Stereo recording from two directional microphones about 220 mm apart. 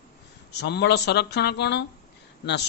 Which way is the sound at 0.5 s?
50° left (ahead or behind).